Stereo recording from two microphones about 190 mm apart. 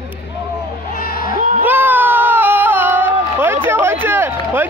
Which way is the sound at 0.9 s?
50° left (ahead or behind).